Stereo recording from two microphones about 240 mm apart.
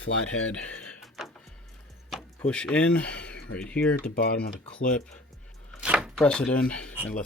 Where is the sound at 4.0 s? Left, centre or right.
Left.